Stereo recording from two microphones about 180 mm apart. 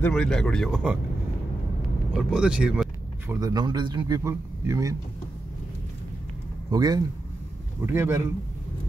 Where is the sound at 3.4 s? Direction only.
20° right (ahead or behind).